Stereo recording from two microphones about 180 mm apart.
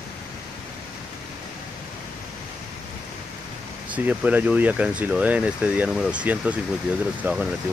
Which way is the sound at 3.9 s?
10° right (ahead or behind).